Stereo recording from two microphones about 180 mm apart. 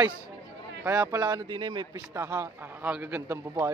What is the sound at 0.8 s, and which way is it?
A man's voice, 15° right (ahead or behind).